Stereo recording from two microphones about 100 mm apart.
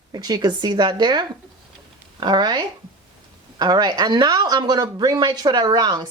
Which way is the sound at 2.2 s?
45° right (ahead or behind).